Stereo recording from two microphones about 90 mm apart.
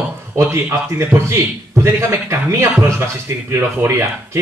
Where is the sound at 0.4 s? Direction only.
30° right (ahead or behind).